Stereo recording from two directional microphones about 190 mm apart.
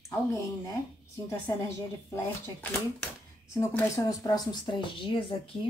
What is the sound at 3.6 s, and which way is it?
Speech, 15° left (ahead or behind).